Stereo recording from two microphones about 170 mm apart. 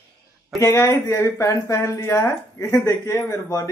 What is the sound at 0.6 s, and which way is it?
Speech, 15° left (ahead or behind).